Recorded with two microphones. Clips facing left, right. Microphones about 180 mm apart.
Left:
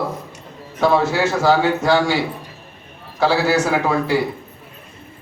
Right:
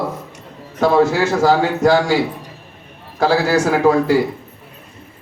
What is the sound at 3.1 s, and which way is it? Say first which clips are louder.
A man's voice: right 2 dB; 45° right (ahead or behind).